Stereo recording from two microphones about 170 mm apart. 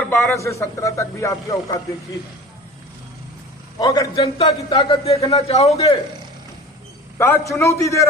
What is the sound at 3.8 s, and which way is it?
Speech, 20° left (ahead or behind).